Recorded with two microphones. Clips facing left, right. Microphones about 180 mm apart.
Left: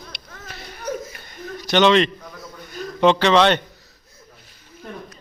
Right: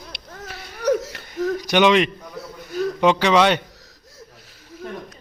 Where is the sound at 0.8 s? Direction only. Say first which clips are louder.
Right 9 dB; 80° right.